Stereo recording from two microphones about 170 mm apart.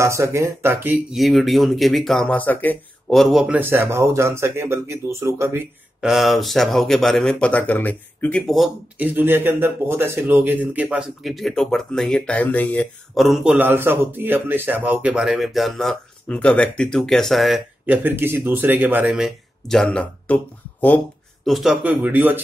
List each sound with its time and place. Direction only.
0.0 s speech: 15° right (ahead or behind)
1.1 s speech: centre (ahead or behind)
3.2 s speech: centre (ahead or behind)
3.5 s speech: 15° right (ahead or behind)
5.9 s speech: centre (ahead or behind)
17.8 s speech: 10° right (ahead or behind); by 20.3 s 5° left (ahead or behind)
21.5 s speech: centre (ahead or behind)